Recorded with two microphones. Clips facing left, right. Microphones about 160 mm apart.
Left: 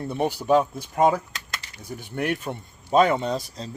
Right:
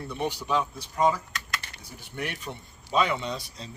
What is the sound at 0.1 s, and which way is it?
Speech, 50° left (ahead or behind).